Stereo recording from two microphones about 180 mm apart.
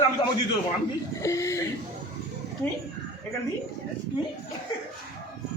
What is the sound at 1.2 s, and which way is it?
Speech, 15° left (ahead or behind).